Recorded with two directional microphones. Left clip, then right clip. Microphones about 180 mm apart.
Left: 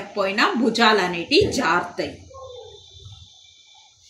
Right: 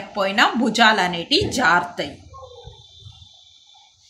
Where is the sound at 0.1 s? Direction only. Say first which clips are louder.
Right 2 dB; 45° right (ahead or behind).